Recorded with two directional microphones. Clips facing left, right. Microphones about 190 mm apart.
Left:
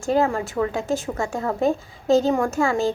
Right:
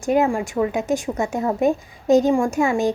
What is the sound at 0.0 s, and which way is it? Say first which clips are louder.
A woman's voice: right 2 dB; 15° right (ahead or behind).